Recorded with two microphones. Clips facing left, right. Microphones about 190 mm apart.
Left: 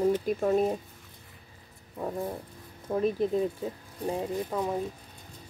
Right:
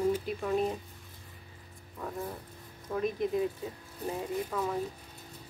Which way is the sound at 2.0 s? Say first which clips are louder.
Left 5 dB; 30° left (ahead or behind).